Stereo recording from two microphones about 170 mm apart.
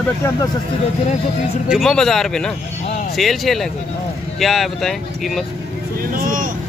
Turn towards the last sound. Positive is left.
turn(degrees=-55)  # may be behind; listen again after turning